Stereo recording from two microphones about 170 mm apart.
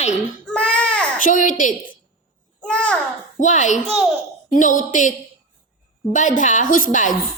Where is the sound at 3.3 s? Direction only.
45° left (ahead or behind).